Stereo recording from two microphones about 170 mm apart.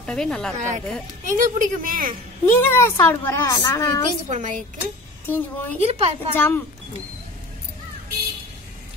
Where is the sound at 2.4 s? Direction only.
15° left (ahead or behind).